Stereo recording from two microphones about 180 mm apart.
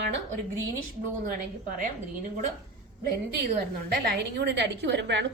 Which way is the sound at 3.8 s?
60° right (ahead or behind).